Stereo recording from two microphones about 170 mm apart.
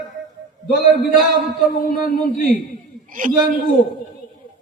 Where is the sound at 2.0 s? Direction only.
55° left (ahead or behind).